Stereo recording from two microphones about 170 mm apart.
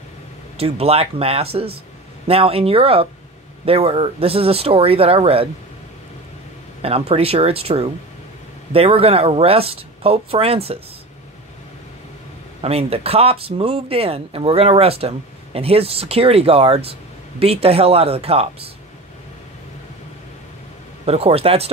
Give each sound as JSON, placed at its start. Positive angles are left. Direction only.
{"t": 0.6, "sound": "speech", "side_deg": -35}
{"t": 6.8, "sound": "speech", "side_deg": -35}
{"t": 12.6, "sound": "speech", "side_deg": -35}
{"t": 21.0, "sound": "speech", "side_deg": -35}